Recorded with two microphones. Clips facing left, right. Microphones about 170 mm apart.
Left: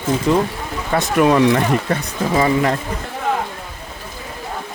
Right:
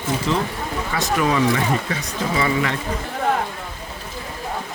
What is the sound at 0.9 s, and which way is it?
Speech, 55° left (ahead or behind).